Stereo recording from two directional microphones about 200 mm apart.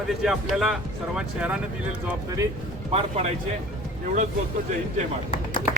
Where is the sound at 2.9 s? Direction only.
35° right (ahead or behind).